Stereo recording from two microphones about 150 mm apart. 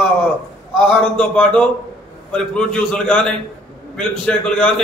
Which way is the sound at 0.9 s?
5° left (ahead or behind).